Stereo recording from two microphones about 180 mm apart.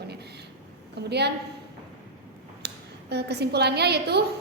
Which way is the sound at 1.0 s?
65° right (ahead or behind).